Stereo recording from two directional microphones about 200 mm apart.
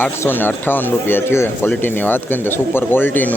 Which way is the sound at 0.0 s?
10° left (ahead or behind).